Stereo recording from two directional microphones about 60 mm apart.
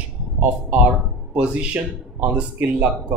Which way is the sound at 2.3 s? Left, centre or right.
Centre.